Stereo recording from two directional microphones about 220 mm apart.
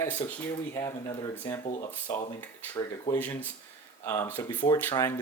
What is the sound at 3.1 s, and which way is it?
Speech, 5° left (ahead or behind).